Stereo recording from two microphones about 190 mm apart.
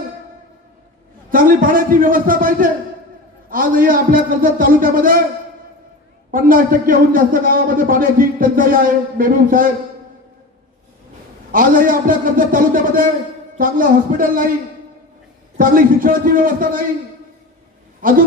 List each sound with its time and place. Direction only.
1.3 s a man's voice: 45° right (ahead or behind)
6.3 s a man's voice: 45° right (ahead or behind)
11.5 s a man's voice: 45° right (ahead or behind)
15.5 s a man's voice: 45° right (ahead or behind)
18.0 s a man's voice: 45° right (ahead or behind)